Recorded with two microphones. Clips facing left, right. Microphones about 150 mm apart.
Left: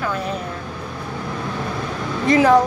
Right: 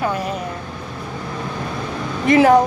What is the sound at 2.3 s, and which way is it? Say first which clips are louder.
Speech: right 2 dB; 20° right (ahead or behind).